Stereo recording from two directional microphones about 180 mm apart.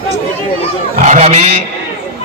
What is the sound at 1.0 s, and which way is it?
Speech, 40° right (ahead or behind).